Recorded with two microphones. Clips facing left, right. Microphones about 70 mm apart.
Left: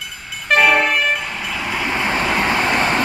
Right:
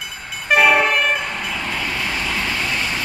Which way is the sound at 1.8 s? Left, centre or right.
Left.